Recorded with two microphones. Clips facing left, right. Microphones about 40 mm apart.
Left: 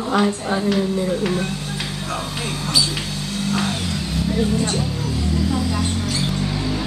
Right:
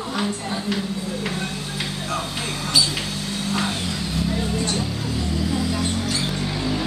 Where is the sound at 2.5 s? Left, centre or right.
Centre.